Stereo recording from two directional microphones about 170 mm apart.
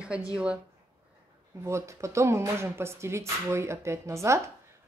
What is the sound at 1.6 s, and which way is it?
Speech, 15° right (ahead or behind).